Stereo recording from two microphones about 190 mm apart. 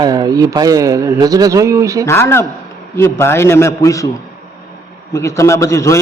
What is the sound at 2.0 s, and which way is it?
A man's voice, 15° left (ahead or behind).